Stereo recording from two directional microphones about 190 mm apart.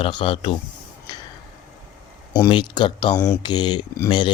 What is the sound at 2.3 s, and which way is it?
Speech, 20° left (ahead or behind).